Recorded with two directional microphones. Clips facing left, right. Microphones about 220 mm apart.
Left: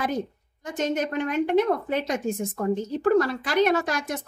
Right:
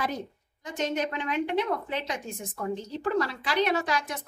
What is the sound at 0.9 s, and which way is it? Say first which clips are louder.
A woman's voice: left 4 dB; 45° left (ahead or behind).